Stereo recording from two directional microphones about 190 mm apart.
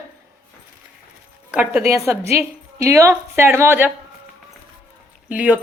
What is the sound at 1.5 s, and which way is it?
A woman's voice, 10° right (ahead or behind).